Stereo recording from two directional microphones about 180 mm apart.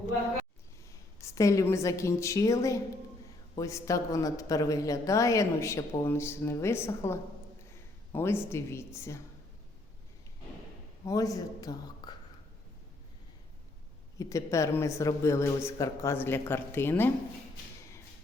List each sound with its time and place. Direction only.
1.2 s speech: 15° left (ahead or behind)
11.0 s a man's voice: 20° left (ahead or behind)
14.2 s speech: 15° left (ahead or behind)